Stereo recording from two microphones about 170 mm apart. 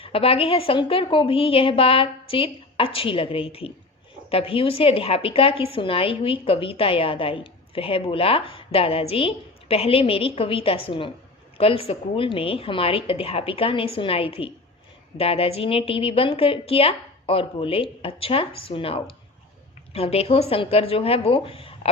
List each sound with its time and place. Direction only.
0.0 s a woman's voice: 35° left (ahead or behind)